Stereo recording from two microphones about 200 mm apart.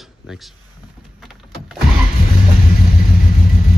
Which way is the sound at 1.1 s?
Centre (ahead or behind).